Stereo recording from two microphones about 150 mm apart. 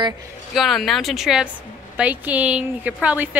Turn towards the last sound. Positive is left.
turn(degrees=-10)  # may be behind; listen again after turning